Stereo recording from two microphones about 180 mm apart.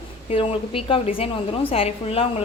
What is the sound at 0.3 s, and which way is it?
A woman's voice, 35° left (ahead or behind).